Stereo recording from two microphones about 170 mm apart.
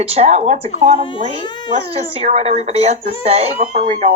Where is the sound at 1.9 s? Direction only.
35° right (ahead or behind).